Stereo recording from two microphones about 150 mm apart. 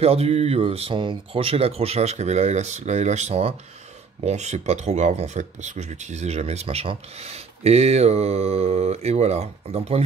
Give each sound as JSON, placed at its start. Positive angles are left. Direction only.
{"t": 0.0, "sound": "speech", "side_deg": -45}